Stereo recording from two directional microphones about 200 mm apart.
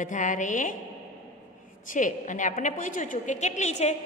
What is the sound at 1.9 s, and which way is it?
A woman's voice, 40° left (ahead or behind).